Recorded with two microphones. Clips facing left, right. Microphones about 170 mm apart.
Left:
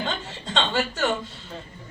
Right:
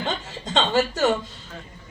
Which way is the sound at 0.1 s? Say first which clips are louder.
Right 3 dB; 40° right (ahead or behind).